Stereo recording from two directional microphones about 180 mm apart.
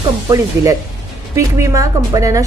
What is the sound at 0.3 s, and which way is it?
Speech, 20° right (ahead or behind).